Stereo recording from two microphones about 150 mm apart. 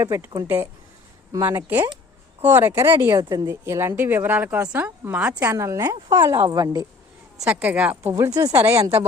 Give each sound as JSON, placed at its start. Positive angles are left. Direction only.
{"t": 0.0, "sound": "a woman's voice", "side_deg": -20}
{"t": 7.3, "sound": "a woman's voice", "side_deg": -10}
{"t": 8.1, "sound": "a woman's voice", "side_deg": -25}